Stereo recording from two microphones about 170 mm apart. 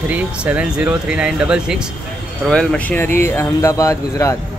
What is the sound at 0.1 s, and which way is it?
Speech, 10° right (ahead or behind).